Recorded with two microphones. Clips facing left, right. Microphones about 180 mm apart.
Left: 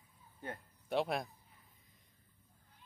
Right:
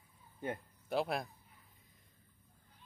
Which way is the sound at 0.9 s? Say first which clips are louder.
Even; centre (ahead or behind).